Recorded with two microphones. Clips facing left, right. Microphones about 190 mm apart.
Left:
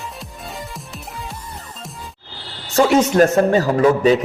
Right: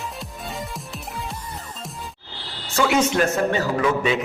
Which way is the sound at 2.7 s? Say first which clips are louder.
Left 5 dB; 40° left (ahead or behind).